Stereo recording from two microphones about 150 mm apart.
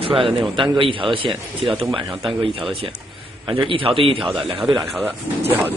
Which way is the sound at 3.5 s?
35° right (ahead or behind).